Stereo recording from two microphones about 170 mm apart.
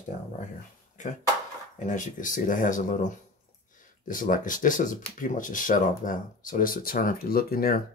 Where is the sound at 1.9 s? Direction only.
50° left (ahead or behind).